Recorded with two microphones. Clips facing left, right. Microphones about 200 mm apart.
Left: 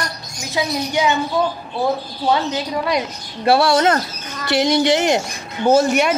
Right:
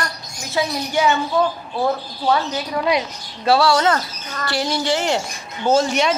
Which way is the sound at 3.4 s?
55° left (ahead or behind).